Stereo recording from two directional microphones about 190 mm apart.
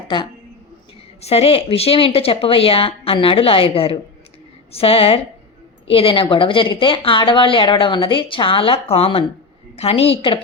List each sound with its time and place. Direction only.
1.2 s a woman's voice: 30° left (ahead or behind)